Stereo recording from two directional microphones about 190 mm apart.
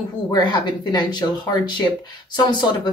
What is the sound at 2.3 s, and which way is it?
Speech, 25° left (ahead or behind).